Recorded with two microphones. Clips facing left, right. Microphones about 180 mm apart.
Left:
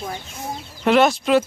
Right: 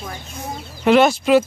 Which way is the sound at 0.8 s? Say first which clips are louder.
Right 2 dB; centre (ahead or behind).